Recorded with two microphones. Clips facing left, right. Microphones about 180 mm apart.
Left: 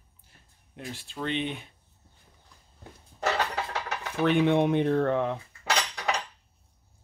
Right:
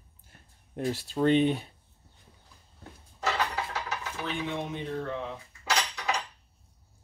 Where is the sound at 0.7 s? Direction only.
40° right (ahead or behind).